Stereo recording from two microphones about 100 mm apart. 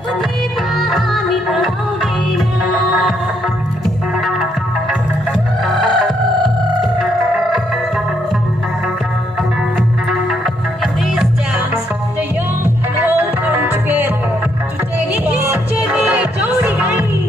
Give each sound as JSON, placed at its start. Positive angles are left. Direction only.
{"t": 0.7, "sound": "music", "side_deg": 0}
{"t": 9.8, "sound": "music", "side_deg": 0}
{"t": 13.0, "sound": "music", "side_deg": -20}
{"t": 15.2, "sound": "music", "side_deg": -15}